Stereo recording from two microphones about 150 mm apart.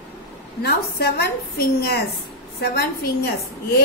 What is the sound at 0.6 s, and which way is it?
A woman's voice, 90° left.